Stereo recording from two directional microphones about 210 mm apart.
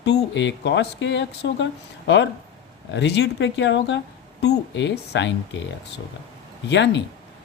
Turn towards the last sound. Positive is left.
turn(degrees=55)  # may be behind; listen again after turning